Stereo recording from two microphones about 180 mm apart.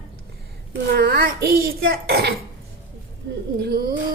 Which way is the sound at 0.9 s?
55° right (ahead or behind).